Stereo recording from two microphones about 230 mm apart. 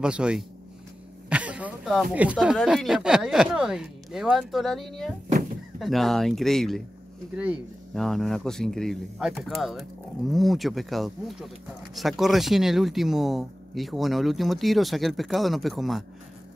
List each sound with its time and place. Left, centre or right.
0.0 s speech: centre